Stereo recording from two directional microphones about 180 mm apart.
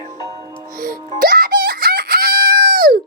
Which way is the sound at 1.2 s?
55° right (ahead or behind).